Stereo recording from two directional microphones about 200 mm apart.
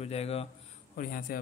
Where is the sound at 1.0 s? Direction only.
45° left (ahead or behind).